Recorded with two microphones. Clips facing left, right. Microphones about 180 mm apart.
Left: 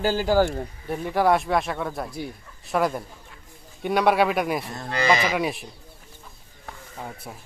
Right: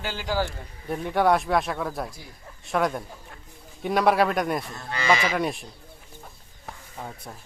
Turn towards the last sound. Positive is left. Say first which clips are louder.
# left 2 dB
turn(degrees=5)  # may be behind; listen again after turning